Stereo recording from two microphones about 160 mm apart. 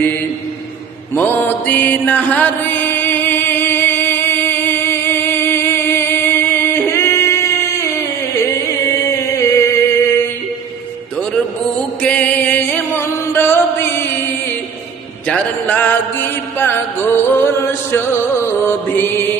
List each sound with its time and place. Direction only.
1.1 s mantra: 10° left (ahead or behind)
9.0 s a sound: 20° left (ahead or behind)
12.0 s music: 10° left (ahead or behind)
15.3 s music: 10° left (ahead or behind)
18.9 s mantra: 15° left (ahead or behind)